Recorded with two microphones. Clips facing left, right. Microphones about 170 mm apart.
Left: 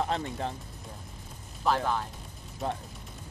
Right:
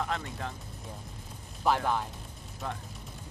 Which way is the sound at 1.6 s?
10° right (ahead or behind).